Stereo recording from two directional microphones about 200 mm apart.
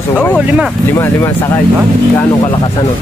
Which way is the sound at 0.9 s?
15° left (ahead or behind).